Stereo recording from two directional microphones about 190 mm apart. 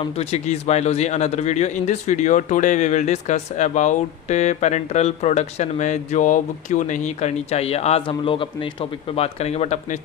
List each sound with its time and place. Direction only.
0.0 s a man's voice: 35° left (ahead or behind)